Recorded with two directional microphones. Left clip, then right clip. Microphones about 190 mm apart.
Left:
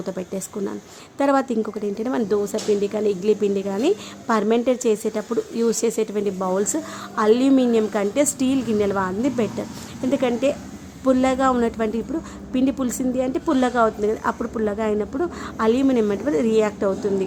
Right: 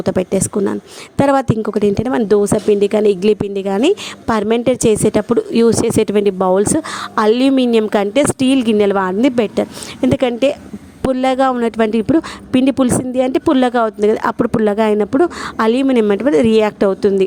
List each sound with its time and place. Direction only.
0.0 s a woman's voice: 45° right (ahead or behind)